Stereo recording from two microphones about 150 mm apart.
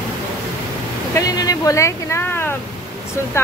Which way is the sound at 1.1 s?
25° left (ahead or behind).